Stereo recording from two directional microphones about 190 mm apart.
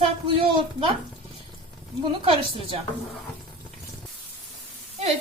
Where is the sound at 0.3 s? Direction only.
25° right (ahead or behind).